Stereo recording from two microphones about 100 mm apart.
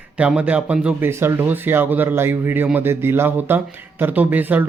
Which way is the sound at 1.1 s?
25° right (ahead or behind).